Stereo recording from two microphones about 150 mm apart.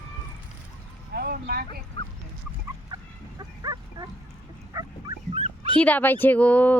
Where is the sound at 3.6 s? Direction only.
25° right (ahead or behind).